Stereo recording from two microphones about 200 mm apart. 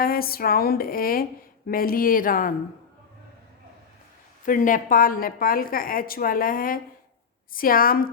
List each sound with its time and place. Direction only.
0.0 s a woman's voice: 50° left (ahead or behind)
4.4 s a woman's voice: 40° left (ahead or behind)